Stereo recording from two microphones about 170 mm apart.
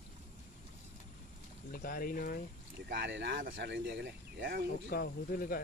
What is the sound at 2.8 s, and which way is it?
Speech, 80° right.